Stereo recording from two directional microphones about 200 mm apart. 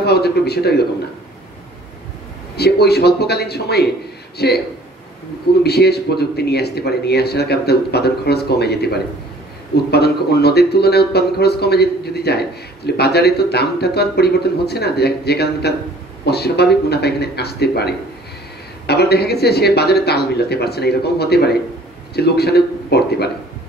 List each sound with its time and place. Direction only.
0.0 s a man's voice: 55° left (ahead or behind)
2.5 s speech: 55° left (ahead or behind)
5.6 s speech: 55° left (ahead or behind)